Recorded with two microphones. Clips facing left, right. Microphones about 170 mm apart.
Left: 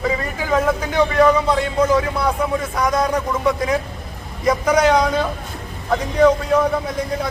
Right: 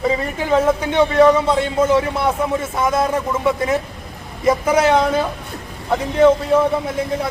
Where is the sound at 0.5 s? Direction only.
25° right (ahead or behind).